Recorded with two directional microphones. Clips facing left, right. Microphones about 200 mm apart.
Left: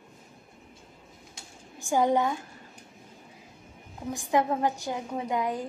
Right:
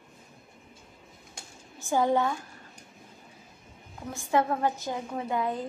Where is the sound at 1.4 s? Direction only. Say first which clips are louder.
Right 4 dB; 50° right (ahead or behind).